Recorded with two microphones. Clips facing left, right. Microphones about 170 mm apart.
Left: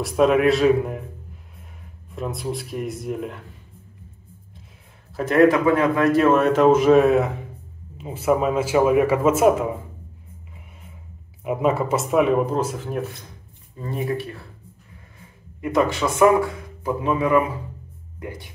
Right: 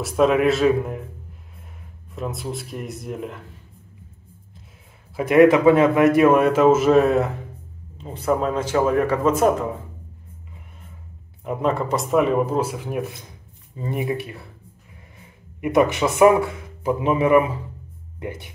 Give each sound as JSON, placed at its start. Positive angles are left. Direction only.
{"t": 0.0, "sound": "speech", "side_deg": 0}
{"t": 2.1, "sound": "speech", "side_deg": 0}
{"t": 5.1, "sound": "a man's voice", "side_deg": -10}
{"t": 11.4, "sound": "a man's voice", "side_deg": 5}
{"t": 15.6, "sound": "speech", "side_deg": -20}